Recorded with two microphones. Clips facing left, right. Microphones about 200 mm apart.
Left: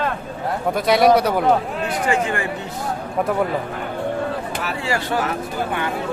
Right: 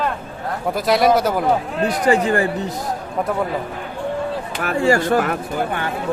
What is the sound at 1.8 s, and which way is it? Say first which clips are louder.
Speech: right 4 dB; 35° right (ahead or behind).